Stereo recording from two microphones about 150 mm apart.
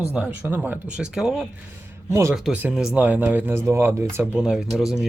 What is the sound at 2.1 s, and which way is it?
Speech, 20° right (ahead or behind).